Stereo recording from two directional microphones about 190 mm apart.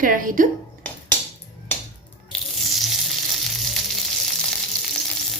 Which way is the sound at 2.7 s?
Centre (ahead or behind).